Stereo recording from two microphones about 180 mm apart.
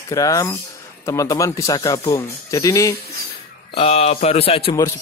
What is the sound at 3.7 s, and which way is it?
Speech, 35° left (ahead or behind).